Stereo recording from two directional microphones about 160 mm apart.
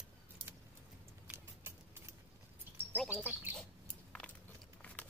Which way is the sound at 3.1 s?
10° right (ahead or behind).